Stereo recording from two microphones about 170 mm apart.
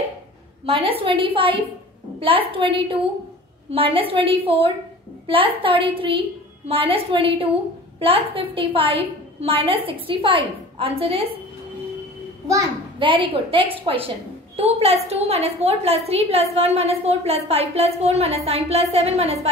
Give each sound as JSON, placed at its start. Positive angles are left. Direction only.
{"t": 0.7, "sound": "a woman's voice", "side_deg": -35}
{"t": 13.0, "sound": "a woman's voice", "side_deg": -30}